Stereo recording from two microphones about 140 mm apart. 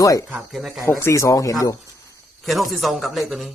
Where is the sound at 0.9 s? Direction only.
20° left (ahead or behind).